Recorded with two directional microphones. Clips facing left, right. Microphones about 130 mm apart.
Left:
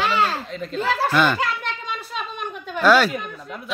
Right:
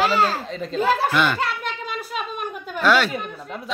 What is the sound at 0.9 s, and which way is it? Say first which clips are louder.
Speech: left 1 dB; centre (ahead or behind).